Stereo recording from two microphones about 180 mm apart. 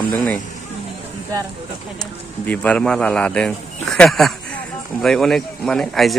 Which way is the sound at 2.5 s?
5° left (ahead or behind).